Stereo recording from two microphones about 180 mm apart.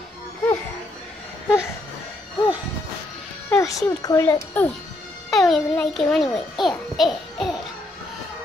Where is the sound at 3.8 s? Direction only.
20° left (ahead or behind).